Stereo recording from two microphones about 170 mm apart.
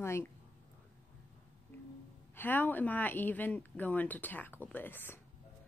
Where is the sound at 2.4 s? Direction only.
10° left (ahead or behind).